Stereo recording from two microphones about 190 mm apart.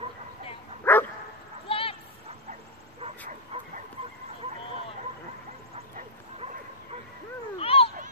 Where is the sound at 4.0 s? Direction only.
30° right (ahead or behind).